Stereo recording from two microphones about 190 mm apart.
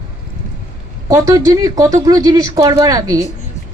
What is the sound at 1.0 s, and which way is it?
A woman's voice, 15° right (ahead or behind).